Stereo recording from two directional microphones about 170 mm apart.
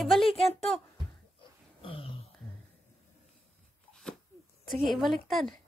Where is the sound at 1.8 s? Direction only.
30° left (ahead or behind).